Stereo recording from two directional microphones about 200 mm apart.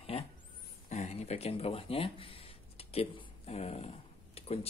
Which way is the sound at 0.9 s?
35° left (ahead or behind).